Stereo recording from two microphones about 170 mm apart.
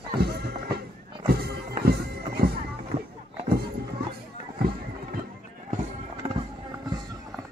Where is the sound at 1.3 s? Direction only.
70° right (ahead or behind).